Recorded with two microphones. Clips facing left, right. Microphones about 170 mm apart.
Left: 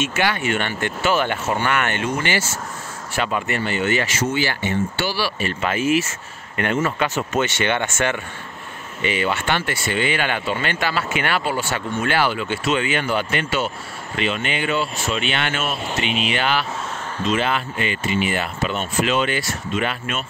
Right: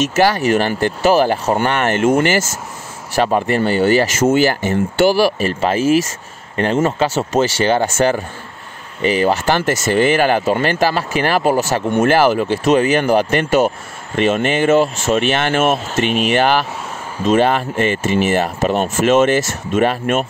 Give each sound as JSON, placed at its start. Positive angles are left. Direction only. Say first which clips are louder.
{"t": 0.0, "sound": "speech", "louder": "right 7 dB", "side_deg": -40}
{"t": 2.0, "sound": "speech", "louder": "right 9 dB", "side_deg": -50}